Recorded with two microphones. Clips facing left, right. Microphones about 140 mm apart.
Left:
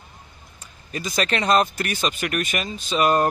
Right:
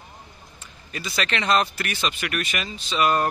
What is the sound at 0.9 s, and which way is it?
Speech, 40° left (ahead or behind).